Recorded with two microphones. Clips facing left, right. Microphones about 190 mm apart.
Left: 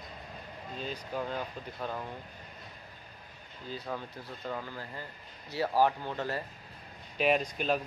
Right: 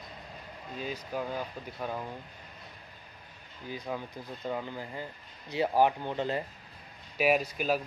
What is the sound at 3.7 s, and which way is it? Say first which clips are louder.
Speech: right 2 dB; 15° right (ahead or behind).